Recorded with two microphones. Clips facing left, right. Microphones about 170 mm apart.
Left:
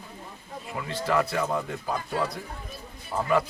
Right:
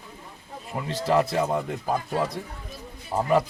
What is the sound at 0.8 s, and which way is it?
Speech, 25° right (ahead or behind).